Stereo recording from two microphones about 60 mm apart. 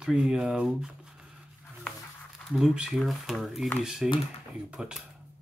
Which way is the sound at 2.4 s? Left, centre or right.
Centre.